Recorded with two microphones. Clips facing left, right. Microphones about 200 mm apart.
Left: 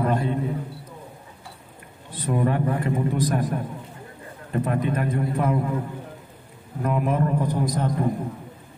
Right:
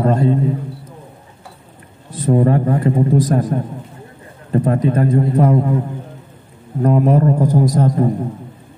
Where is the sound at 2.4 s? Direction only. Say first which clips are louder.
Right 8 dB; 40° right (ahead or behind).